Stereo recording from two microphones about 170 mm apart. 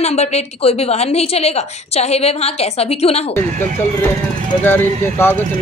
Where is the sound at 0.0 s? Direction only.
40° left (ahead or behind).